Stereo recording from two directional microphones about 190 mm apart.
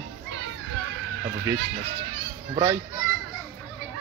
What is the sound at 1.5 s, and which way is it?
Speech, 15° right (ahead or behind).